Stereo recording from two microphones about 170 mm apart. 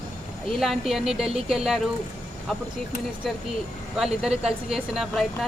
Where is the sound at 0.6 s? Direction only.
Centre (ahead or behind).